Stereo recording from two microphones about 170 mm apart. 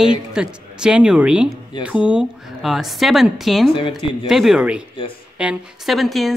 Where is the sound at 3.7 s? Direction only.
30° left (ahead or behind).